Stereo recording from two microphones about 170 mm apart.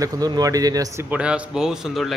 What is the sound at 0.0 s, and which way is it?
Speech, 20° right (ahead or behind).